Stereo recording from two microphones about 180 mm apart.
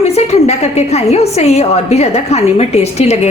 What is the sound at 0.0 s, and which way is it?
A woman's voice, 35° left (ahead or behind).